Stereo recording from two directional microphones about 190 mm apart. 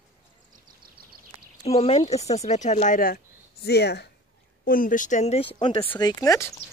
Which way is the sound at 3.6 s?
60° left (ahead or behind).